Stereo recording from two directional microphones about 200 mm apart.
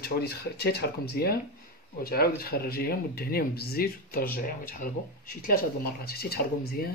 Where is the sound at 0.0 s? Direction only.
50° left (ahead or behind).